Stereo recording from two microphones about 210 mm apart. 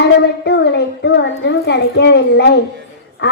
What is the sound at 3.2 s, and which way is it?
Speech, 55° left (ahead or behind).